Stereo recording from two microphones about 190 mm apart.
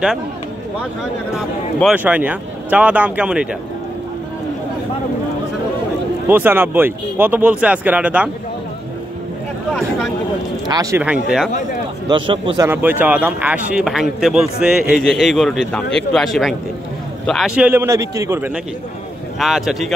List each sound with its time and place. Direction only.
1.3 s speech: centre (ahead or behind)
6.2 s speech: 10° right (ahead or behind)
10.7 s speech: 15° right (ahead or behind)
12.1 s a man's voice: 25° right (ahead or behind)
12.6 s a man's voice: 10° right (ahead or behind)
19.4 s a man's voice: centre (ahead or behind)